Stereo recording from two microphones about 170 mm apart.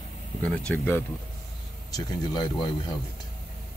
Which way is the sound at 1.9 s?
20° left (ahead or behind).